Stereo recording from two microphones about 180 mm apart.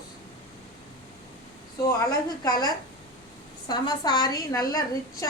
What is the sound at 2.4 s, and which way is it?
A woman's voice, 20° left (ahead or behind).